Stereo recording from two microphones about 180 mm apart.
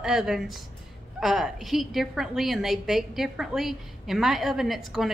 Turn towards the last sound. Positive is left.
turn(degrees=0)  # may be behind; listen again after turning